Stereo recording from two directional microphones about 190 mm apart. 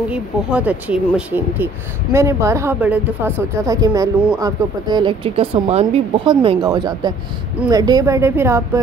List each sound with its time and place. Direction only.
0.1 s speech: 5° right (ahead or behind)